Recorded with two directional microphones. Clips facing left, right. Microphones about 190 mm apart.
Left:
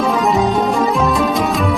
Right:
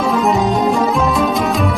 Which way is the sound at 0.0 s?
Centre (ahead or behind).